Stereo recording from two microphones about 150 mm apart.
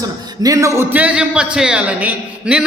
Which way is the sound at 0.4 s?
20° right (ahead or behind).